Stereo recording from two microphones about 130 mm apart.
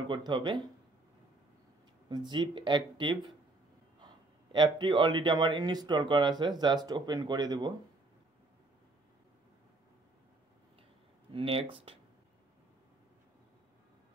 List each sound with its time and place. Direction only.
0.0 s a man's voice: 35° right (ahead or behind)
2.0 s a man's voice: 35° right (ahead or behind)
11.3 s speech: 45° right (ahead or behind)